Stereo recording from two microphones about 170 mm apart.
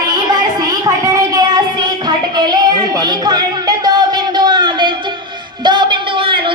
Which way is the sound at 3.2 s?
25° right (ahead or behind).